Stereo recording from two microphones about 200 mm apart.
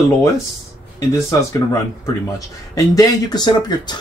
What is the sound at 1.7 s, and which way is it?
Speech, 15° left (ahead or behind).